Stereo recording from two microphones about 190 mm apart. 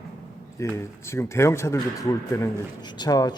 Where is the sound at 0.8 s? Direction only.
15° left (ahead or behind).